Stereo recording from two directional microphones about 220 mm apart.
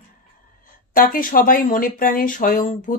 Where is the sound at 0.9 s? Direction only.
40° left (ahead or behind).